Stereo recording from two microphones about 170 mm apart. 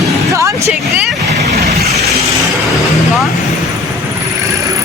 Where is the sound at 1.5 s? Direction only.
65° right (ahead or behind).